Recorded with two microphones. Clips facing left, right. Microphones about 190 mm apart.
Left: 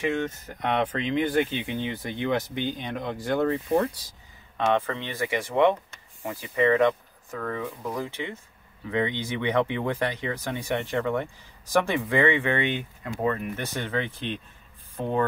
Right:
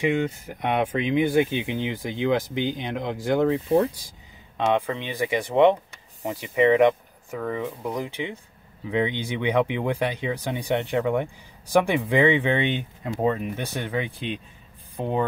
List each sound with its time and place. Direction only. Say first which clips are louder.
0.0 s speech: right 4 dB; 15° right (ahead or behind)